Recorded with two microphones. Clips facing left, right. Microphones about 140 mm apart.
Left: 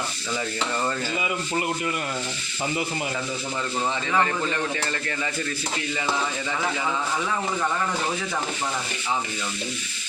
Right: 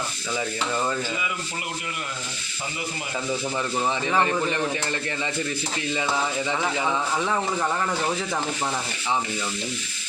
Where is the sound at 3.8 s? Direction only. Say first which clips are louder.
Right 1 dB; 20° right (ahead or behind).